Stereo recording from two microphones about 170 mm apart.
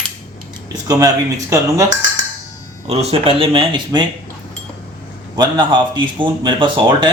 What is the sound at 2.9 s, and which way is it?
Speech, 35° right (ahead or behind).